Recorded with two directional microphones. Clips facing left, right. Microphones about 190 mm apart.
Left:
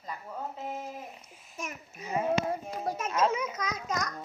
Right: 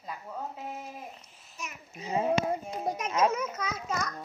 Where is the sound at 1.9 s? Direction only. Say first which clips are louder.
Right 1 dB; 25° right (ahead or behind).